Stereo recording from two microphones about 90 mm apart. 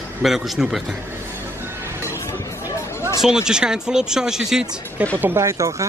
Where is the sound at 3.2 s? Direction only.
5° right (ahead or behind).